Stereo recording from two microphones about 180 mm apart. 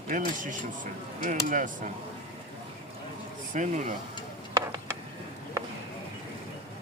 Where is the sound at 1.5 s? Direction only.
45° right (ahead or behind).